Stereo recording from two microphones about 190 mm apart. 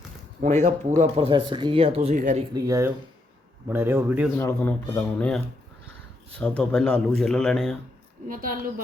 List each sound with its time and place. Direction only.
0.4 s speech: 40° right (ahead or behind)
2.5 s speech: 20° right (ahead or behind)
4.4 s speech: 10° left (ahead or behind)
6.4 s speech: 5° left (ahead or behind)
8.3 s a woman's voice: 45° right (ahead or behind)